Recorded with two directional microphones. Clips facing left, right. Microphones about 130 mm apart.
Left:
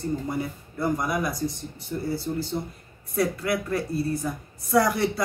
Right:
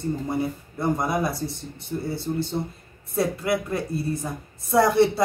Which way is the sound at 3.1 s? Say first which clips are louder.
Right 1 dB; 25° right (ahead or behind).